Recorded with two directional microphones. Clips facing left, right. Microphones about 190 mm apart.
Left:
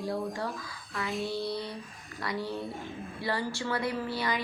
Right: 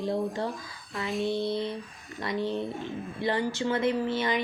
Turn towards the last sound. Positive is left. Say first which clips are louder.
# right 5 dB
turn(degrees=-20)  # may be behind; listen again after turning